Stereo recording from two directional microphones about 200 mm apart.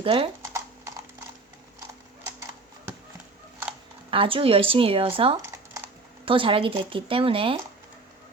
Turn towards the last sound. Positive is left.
turn(degrees=-25)  # may be behind; listen again after turning